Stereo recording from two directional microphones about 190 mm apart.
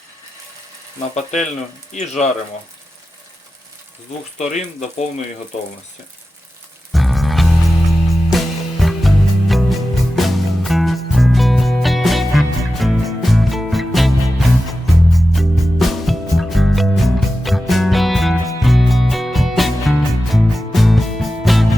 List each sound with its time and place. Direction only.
1.1 s speech: 40° left (ahead or behind)
4.4 s speech: 35° left (ahead or behind)
6.9 s music: centre (ahead or behind)